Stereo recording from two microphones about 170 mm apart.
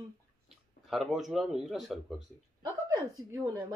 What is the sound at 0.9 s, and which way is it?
A man's voice, centre (ahead or behind).